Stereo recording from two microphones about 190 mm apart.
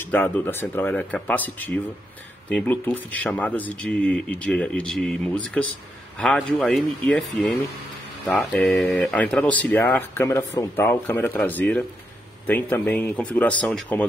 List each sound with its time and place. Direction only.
0.0 s speech: 10° left (ahead or behind)